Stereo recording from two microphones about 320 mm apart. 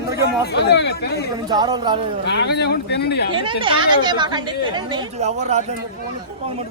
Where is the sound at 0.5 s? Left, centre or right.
Left.